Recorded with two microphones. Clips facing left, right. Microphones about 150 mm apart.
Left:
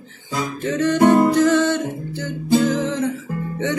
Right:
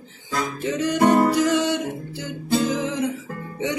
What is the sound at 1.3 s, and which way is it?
Music, 15° right (ahead or behind).